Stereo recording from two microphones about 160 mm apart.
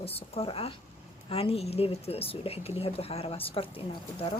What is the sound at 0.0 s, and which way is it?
Speech, 35° left (ahead or behind).